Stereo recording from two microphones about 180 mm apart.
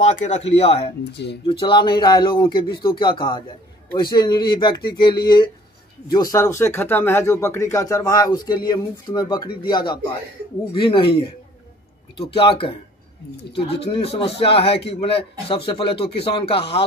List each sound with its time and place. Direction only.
0.0 s a man's voice: 40° left (ahead or behind)
1.1 s speech: 70° left (ahead or behind)
1.4 s speech: 30° left (ahead or behind)
12.4 s speech: 30° left (ahead or behind)
13.9 s a man's voice: 35° left (ahead or behind)